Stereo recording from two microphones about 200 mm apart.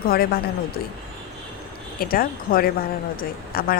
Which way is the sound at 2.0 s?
45° left (ahead or behind).